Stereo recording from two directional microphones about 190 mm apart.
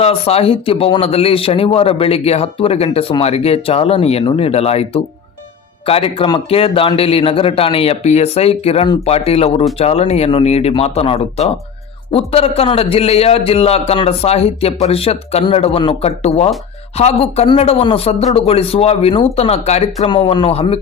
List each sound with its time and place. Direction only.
0.0 s speech: 30° left (ahead or behind)